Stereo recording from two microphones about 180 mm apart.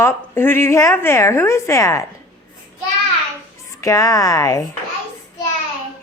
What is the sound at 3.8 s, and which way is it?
Speech, 20° left (ahead or behind).